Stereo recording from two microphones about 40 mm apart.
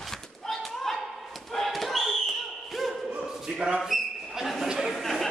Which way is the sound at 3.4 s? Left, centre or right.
Centre.